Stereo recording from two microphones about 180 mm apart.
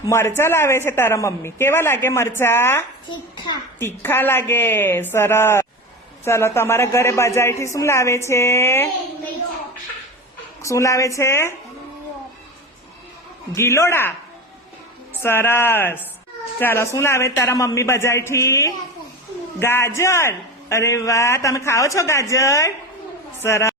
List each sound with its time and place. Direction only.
0.1 s a man's voice: 15° left (ahead or behind)
3.1 s a child's voice: 25° left (ahead or behind)
3.8 s a man's voice: 15° left (ahead or behind)
10.6 s a man's voice: 15° left (ahead or behind)
13.5 s a man's voice: 15° left (ahead or behind)
15.2 s a man's voice: 10° left (ahead or behind)